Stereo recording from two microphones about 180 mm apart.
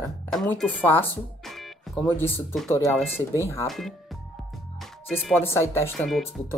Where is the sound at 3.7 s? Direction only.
Centre (ahead or behind).